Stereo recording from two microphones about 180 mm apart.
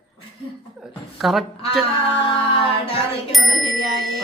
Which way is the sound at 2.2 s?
30° left (ahead or behind).